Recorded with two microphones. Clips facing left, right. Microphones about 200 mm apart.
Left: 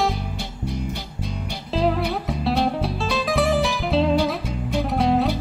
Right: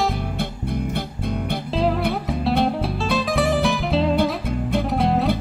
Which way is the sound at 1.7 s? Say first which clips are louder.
Left 1 dB; centre (ahead or behind).